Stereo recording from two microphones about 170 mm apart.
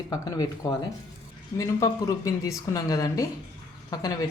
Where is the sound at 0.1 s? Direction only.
20° left (ahead or behind).